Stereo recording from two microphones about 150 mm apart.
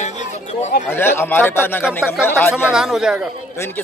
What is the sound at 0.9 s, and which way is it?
Speech, 15° left (ahead or behind).